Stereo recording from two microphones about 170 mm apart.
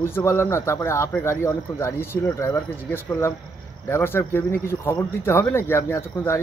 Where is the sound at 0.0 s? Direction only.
15° left (ahead or behind).